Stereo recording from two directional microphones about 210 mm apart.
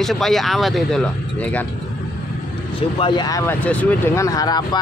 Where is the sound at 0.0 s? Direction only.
Centre (ahead or behind).